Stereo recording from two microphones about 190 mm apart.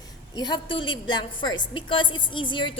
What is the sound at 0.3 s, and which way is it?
A woman's voice, 25° left (ahead or behind).